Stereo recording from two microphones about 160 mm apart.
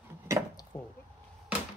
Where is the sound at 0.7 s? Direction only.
15° left (ahead or behind).